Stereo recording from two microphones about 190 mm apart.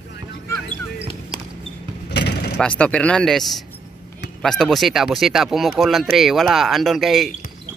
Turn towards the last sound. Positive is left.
turn(degrees=0)  # may be behind; listen again after turning